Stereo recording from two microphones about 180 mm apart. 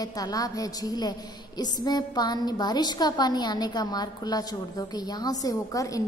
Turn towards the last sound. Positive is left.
turn(degrees=20)  # may be behind; listen again after turning